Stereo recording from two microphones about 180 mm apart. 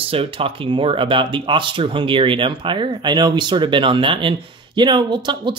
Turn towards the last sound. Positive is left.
turn(degrees=-25)  # may be behind; listen again after turning